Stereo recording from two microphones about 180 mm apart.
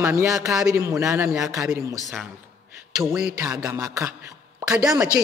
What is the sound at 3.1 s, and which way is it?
A man's voice, 5° right (ahead or behind).